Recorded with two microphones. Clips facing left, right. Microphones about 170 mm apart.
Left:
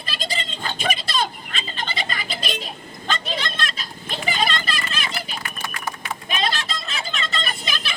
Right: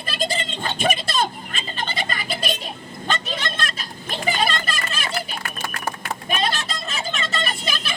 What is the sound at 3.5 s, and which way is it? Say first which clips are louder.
Children playing: even; 50° right (ahead or behind).